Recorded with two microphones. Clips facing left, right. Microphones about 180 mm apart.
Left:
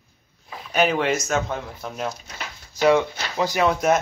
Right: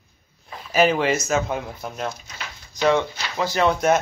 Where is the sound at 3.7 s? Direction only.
Centre (ahead or behind).